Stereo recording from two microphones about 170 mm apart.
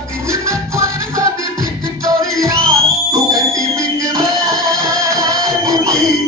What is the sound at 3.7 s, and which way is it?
Music, 20° right (ahead or behind).